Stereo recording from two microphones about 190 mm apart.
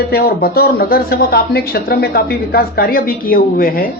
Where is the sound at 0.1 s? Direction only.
55° left (ahead or behind).